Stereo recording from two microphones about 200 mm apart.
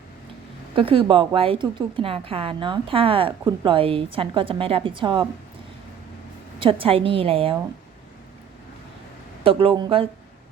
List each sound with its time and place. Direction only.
0.8 s a woman's voice: 25° right (ahead or behind)
6.6 s a woman's voice: 25° right (ahead or behind)
9.4 s a woman's voice: 25° right (ahead or behind)